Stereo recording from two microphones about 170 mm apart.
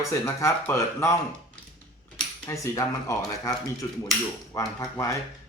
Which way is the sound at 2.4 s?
15° left (ahead or behind).